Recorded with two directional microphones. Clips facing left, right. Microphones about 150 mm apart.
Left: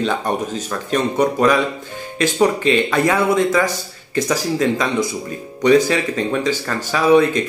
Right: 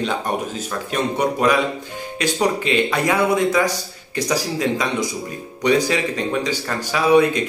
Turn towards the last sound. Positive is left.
turn(degrees=-15)  # may be behind; listen again after turning